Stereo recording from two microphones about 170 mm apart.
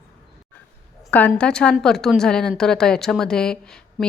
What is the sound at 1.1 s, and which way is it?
A woman's voice, 10° left (ahead or behind).